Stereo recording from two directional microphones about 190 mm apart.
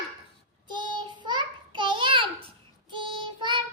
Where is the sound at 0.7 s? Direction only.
25° right (ahead or behind).